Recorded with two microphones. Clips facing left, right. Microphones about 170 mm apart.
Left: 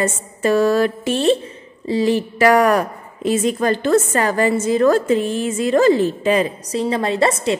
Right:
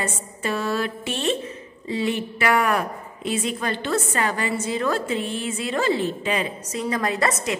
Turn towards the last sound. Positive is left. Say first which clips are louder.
# left 6 dB
turn(degrees=30)  # may be behind; listen again after turning